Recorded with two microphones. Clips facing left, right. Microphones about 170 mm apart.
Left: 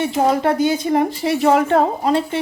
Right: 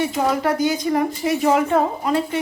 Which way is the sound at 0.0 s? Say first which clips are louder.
Left 3 dB; 30° left (ahead or behind).